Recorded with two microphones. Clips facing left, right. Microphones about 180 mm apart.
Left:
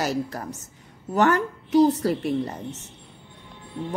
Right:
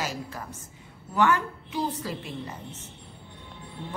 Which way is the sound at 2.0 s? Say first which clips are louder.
Left 11 dB; 70° left (ahead or behind).